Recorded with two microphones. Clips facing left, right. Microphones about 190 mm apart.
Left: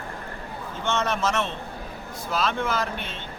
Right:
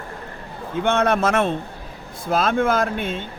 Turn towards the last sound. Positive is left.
turn(degrees=-50)  # may be behind; listen again after turning